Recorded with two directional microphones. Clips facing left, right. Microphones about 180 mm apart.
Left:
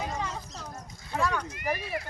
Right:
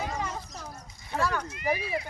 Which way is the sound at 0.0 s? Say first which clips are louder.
Right 1 dB; centre (ahead or behind).